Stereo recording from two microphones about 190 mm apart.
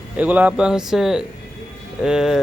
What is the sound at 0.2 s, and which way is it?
Speech, 10° right (ahead or behind).